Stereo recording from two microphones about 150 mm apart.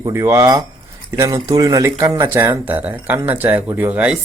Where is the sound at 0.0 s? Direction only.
20° right (ahead or behind).